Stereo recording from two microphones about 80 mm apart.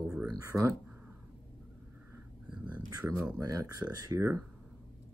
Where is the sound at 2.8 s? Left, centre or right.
Right.